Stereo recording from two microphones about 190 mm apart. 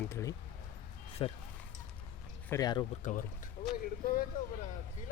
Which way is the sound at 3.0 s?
40° left (ahead or behind).